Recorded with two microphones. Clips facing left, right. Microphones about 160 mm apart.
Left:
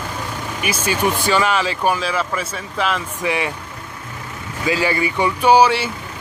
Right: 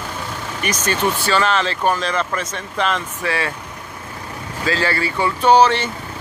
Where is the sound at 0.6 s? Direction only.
10° left (ahead or behind).